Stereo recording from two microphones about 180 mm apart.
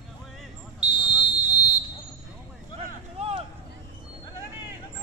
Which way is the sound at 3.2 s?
30° right (ahead or behind).